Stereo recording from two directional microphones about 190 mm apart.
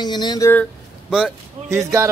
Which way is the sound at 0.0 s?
20° left (ahead or behind).